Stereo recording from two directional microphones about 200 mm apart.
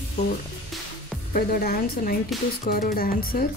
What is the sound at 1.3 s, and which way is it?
A woman's voice, 45° left (ahead or behind).